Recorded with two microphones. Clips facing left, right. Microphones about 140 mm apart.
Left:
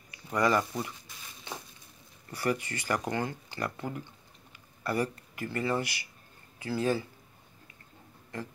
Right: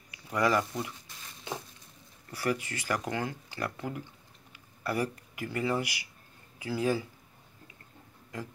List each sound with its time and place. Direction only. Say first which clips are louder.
0.1 s a sound: left 1 dB; 5° right (ahead or behind)
2.3 s speech: left 1 dB; 5° right (ahead or behind)
8.3 s speech: left 1 dB; 10° right (ahead or behind)